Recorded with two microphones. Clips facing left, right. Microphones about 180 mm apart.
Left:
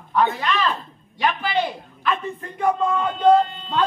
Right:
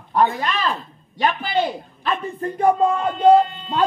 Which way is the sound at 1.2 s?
40° right (ahead or behind).